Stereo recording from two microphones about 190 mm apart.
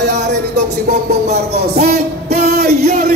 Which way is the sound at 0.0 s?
65° right (ahead or behind).